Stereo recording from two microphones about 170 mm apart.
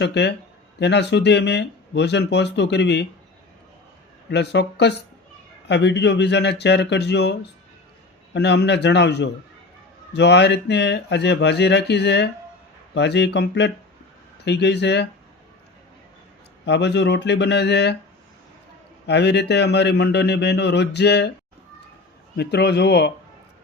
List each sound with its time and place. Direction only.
0.0 s speech: 90° left
4.3 s speech: 90° left
16.6 s speech: 85° left
19.0 s speech: 85° left
22.4 s speech: 75° left (ahead or behind)